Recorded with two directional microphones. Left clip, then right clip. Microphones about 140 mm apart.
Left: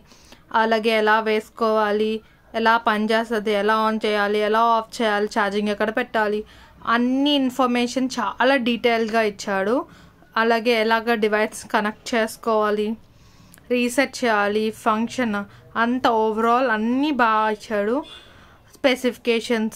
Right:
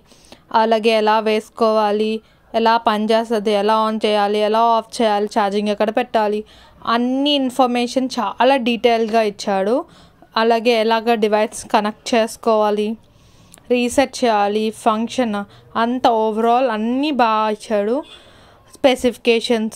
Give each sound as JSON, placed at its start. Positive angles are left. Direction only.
{"t": 0.5, "sound": "a woman's voice", "side_deg": -30}
{"t": 7.0, "sound": "speech", "side_deg": -10}
{"t": 7.2, "sound": "a woman's voice", "side_deg": -25}